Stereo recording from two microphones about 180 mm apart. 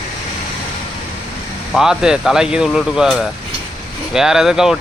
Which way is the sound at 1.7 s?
5° right (ahead or behind).